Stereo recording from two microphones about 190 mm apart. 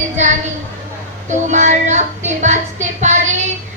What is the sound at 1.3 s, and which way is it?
Speech, 40° right (ahead or behind).